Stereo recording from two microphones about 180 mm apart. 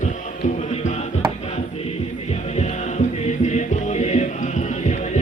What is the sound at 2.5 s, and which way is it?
Music, 40° left (ahead or behind).